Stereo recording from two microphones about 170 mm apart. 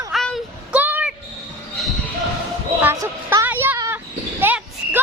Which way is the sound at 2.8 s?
15° right (ahead or behind).